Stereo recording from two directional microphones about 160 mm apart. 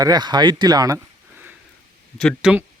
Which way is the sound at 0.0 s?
25° right (ahead or behind).